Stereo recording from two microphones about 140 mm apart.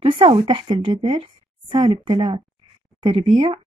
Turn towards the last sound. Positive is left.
turn(degrees=-35)  # may be behind; listen again after turning